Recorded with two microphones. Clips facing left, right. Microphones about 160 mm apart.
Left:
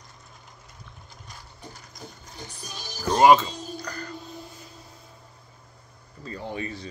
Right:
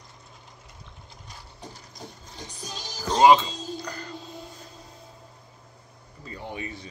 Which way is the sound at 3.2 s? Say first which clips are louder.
Even; 20° right (ahead or behind).